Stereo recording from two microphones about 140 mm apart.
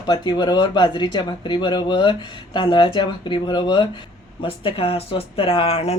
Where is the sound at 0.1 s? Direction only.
30° left (ahead or behind).